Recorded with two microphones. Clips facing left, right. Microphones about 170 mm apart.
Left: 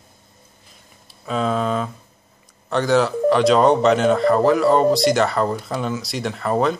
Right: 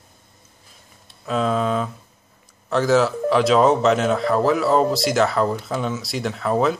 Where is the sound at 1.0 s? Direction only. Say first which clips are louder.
Even; centre (ahead or behind).